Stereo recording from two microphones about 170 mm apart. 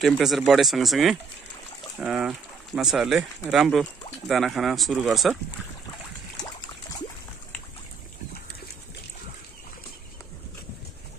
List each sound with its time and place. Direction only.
0.0 s speech: centre (ahead or behind)